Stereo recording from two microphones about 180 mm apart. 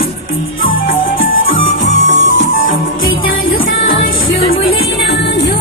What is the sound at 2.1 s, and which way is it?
Music, 90° left.